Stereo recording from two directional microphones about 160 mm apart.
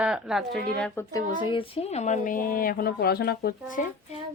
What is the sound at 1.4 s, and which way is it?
Speech, 35° left (ahead or behind).